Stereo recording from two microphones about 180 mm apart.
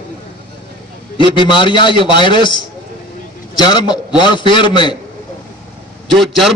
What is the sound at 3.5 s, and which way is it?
A man's voice, 25° left (ahead or behind).